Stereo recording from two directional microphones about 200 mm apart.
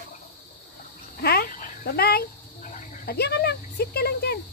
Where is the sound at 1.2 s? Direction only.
50° left (ahead or behind).